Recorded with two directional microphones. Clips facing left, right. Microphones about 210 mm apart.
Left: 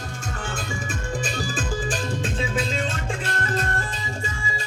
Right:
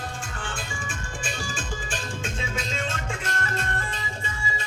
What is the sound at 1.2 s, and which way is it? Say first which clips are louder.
Music: left 6 dB; 40° left (ahead or behind).